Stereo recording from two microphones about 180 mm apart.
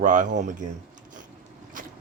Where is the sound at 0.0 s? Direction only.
45° right (ahead or behind).